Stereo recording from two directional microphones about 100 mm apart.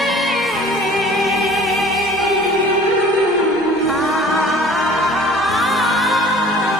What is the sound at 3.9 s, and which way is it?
Music, centre (ahead or behind).